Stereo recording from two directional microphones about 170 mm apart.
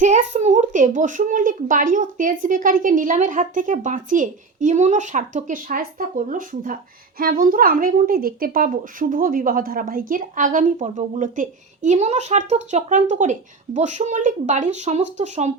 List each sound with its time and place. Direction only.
0.0 s a child's voice: 45° right (ahead or behind)